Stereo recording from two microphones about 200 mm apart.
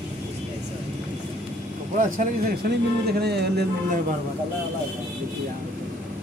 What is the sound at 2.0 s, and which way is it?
Speech, 40° right (ahead or behind).